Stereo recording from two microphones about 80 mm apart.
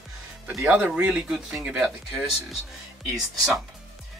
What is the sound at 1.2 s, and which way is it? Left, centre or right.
Speech, centre.